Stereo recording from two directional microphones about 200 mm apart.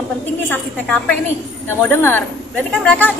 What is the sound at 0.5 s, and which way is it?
A woman's voice, 10° left (ahead or behind).